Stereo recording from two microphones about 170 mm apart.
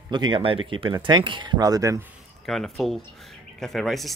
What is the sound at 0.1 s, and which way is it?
Speech, 25° right (ahead or behind).